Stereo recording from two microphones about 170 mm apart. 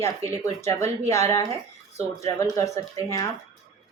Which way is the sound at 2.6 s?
20° left (ahead or behind).